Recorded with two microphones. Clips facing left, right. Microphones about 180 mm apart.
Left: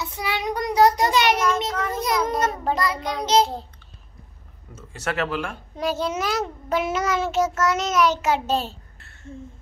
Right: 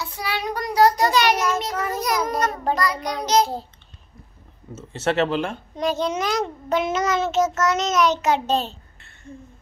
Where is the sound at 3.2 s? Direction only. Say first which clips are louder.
Even; 25° left (ahead or behind).